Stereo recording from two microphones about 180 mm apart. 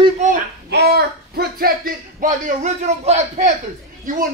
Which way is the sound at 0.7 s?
65° right (ahead or behind).